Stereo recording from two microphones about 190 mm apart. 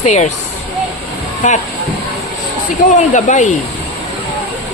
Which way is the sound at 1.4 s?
40° left (ahead or behind).